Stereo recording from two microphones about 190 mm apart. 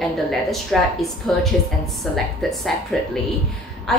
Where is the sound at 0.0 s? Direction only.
Centre (ahead or behind).